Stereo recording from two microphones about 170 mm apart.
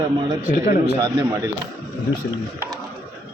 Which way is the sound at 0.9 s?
20° right (ahead or behind).